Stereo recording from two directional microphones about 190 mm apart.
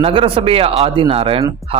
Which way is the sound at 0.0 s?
30° right (ahead or behind).